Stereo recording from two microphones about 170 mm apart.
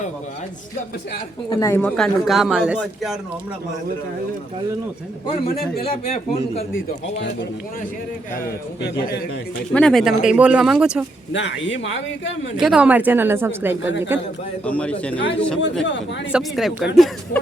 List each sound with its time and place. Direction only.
1.5 s speech: 20° left (ahead or behind)
2.0 s speech: centre (ahead or behind)
5.8 s a man's voice: 35° left (ahead or behind)
9.7 s speech: 5° left (ahead or behind)
11.3 s a man's voice: 90° left
12.5 s speech: 5° right (ahead or behind)
14.7 s speech: 5° left (ahead or behind)